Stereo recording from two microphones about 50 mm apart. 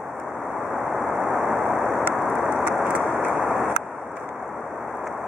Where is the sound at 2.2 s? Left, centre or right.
Centre.